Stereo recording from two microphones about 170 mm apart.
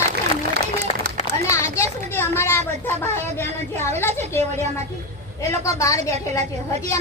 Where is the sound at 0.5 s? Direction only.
75° right (ahead or behind).